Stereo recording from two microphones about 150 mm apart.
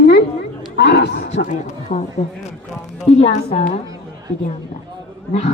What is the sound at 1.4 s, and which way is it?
Speech, 55° left (ahead or behind).